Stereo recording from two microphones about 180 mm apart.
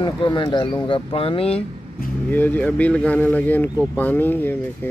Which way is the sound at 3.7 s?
5° right (ahead or behind).